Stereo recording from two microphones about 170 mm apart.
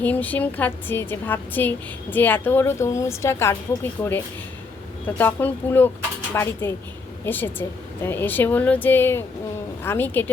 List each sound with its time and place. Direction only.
0.0 s a woman's voice: 10° left (ahead or behind)